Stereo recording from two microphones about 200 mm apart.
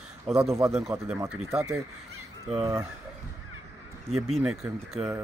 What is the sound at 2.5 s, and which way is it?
Speech, 25° right (ahead or behind).